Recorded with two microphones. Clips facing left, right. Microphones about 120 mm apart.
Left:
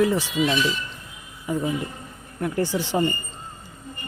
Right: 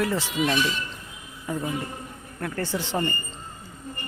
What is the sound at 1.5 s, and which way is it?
Speech, 10° left (ahead or behind).